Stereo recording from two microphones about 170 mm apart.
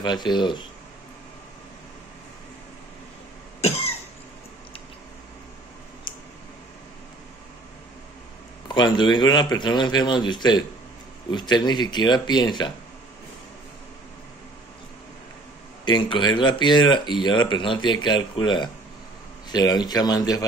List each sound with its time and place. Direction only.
0.0 s speech: 25° left (ahead or behind)
3.6 s cough: 40° left (ahead or behind)
6.1 s a sound: 25° left (ahead or behind)
8.6 s speech: 25° left (ahead or behind)
15.8 s speech: 25° left (ahead or behind)